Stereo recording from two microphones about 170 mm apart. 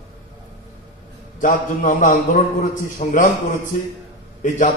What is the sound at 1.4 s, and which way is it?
A man's voice, 50° left (ahead or behind).